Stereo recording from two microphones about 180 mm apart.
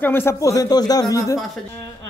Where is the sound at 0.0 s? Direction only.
10° left (ahead or behind).